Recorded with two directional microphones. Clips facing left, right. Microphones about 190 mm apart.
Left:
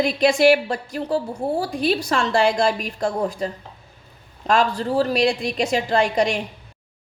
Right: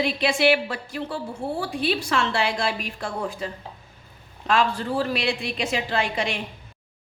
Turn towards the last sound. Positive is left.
turn(degrees=40)  # may be behind; listen again after turning